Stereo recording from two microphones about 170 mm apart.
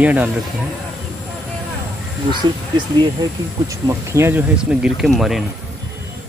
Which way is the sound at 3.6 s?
20° right (ahead or behind).